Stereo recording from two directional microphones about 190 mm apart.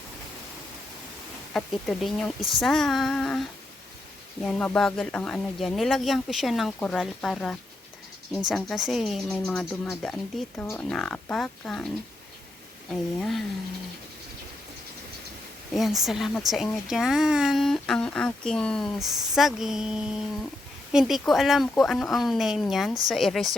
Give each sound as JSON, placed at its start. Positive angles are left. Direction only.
{"t": 1.5, "sound": "speech", "side_deg": 0}
{"t": 4.4, "sound": "speech", "side_deg": 5}
{"t": 12.9, "sound": "speech", "side_deg": 0}
{"t": 15.7, "sound": "speech", "side_deg": 0}